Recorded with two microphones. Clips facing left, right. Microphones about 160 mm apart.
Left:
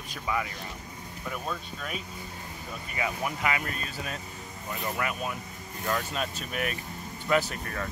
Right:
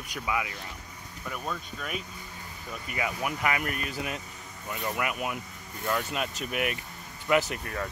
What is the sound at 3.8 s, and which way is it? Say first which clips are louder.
Speech: right 2 dB; 15° right (ahead or behind).